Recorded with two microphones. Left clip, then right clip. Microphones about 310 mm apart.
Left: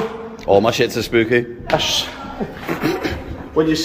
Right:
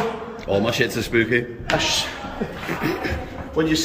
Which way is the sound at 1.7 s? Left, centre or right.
Left.